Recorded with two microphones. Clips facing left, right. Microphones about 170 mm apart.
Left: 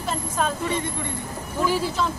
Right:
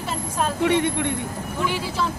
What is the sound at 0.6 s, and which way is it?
Speech, 70° right (ahead or behind).